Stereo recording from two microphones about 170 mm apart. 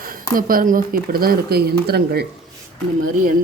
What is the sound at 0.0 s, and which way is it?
Speech, 55° right (ahead or behind).